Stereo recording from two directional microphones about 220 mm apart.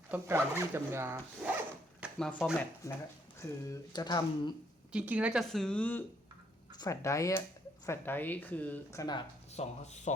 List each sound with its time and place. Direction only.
0.1 s speech: 10° right (ahead or behind)
2.0 s speech: centre (ahead or behind)
3.7 s speech: 20° left (ahead or behind)
4.9 s speech: 5° right (ahead or behind); by 9.2 s 15° left (ahead or behind)
9.6 s speech: 30° left (ahead or behind)